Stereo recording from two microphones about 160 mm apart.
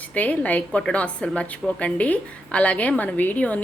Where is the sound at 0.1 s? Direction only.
10° left (ahead or behind).